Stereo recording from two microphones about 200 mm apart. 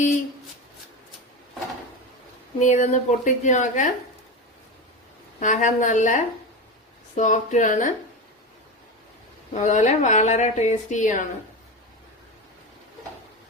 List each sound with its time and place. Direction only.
2.6 s speech: 40° left (ahead or behind)
5.4 s speech: 40° left (ahead or behind)
9.5 s speech: 35° left (ahead or behind)